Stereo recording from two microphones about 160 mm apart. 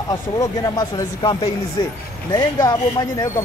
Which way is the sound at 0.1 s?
25° left (ahead or behind).